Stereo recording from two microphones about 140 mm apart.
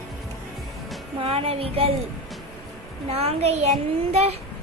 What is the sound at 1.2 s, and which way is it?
Child singing, 45° right (ahead or behind).